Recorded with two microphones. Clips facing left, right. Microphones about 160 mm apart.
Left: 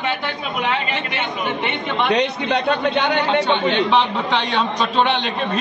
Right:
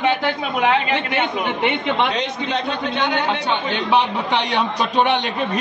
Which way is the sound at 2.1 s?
65° left (ahead or behind).